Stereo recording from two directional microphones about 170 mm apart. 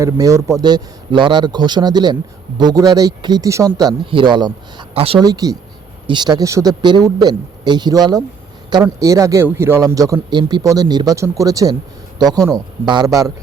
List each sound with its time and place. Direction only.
0.0 s a man's voice: 20° right (ahead or behind); by 5.2 s 35° right (ahead or behind)
5.2 s a man's voice: 20° right (ahead or behind)